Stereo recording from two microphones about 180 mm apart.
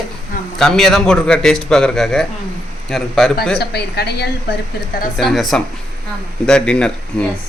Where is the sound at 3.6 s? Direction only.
65° left (ahead or behind).